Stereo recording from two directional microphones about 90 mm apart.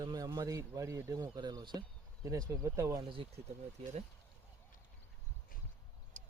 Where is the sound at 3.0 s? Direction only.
75° right (ahead or behind).